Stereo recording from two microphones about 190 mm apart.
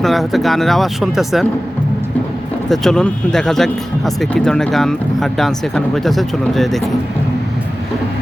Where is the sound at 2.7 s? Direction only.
5° left (ahead or behind).